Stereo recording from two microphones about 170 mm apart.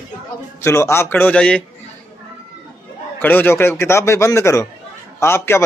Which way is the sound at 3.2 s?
10° left (ahead or behind).